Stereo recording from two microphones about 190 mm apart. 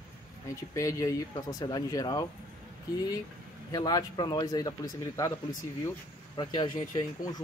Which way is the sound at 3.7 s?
20° left (ahead or behind).